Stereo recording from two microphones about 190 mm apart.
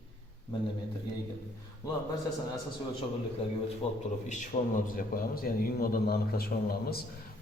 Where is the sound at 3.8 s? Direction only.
35° left (ahead or behind).